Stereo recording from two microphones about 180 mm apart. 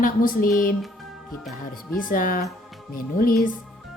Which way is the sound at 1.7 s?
50° left (ahead or behind).